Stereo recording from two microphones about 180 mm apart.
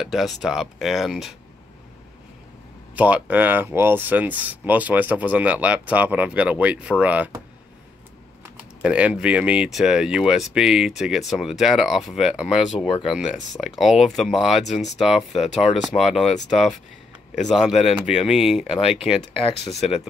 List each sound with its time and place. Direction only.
0.0 s speech: centre (ahead or behind)
3.0 s speech: 10° right (ahead or behind)
8.8 s speech: 5° right (ahead or behind)
14.6 s speech: 40° left (ahead or behind)
14.9 s speech: centre (ahead or behind)
18.8 s speech: 30° left (ahead or behind)